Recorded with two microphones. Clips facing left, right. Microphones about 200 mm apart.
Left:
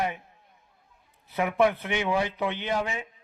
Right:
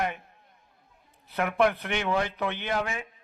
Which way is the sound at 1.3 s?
5° left (ahead or behind).